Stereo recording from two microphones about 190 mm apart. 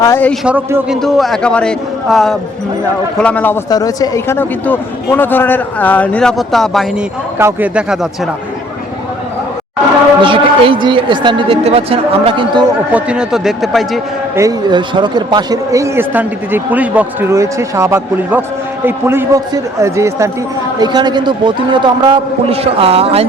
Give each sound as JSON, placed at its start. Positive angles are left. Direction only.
{"t": 0.0, "sound": "a man's voice", "side_deg": 10}
{"t": 0.4, "sound": "a man's voice", "side_deg": -5}
{"t": 3.7, "sound": "a man's voice", "side_deg": 20}
{"t": 7.3, "sound": "a man's voice", "side_deg": -10}
{"t": 10.2, "sound": "a man's voice", "side_deg": -25}
{"t": 12.9, "sound": "speech", "side_deg": -5}
{"t": 14.3, "sound": "a man's voice", "side_deg": -20}